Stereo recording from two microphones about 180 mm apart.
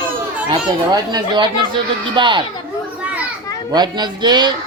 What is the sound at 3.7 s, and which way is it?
Speech, 25° right (ahead or behind).